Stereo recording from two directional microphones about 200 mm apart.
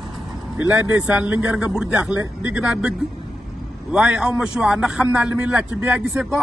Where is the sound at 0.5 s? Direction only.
10° right (ahead or behind).